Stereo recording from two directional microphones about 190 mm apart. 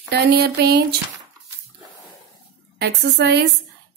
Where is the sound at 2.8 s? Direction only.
60° right (ahead or behind).